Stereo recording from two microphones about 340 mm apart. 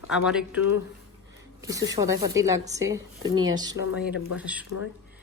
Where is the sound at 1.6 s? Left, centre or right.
Centre.